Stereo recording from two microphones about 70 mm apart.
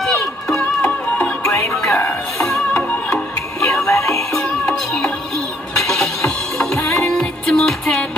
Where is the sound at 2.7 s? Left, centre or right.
Centre.